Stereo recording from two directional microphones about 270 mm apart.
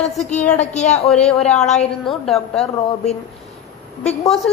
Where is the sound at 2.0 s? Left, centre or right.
Centre.